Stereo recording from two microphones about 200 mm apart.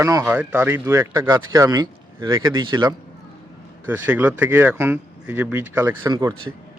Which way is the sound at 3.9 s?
10° right (ahead or behind).